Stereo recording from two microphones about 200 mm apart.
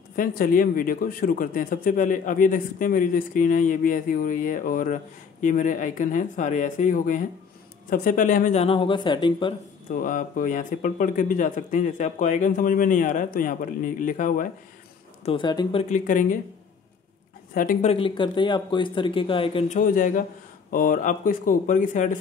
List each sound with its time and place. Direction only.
0.1 s speech: 45° left (ahead or behind); by 9.6 s 25° left (ahead or behind)
9.8 s speech: 45° left (ahead or behind)
15.2 s speech: 25° left (ahead or behind)
15.9 s speech: 40° left (ahead or behind)
17.6 s speech: 45° left (ahead or behind)
17.9 s speech: 25° left (ahead or behind)
19.9 s speech: 40° left (ahead or behind)